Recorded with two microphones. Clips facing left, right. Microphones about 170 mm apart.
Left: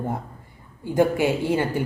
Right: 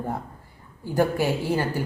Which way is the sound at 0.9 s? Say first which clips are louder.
Left 3 dB; 20° left (ahead or behind).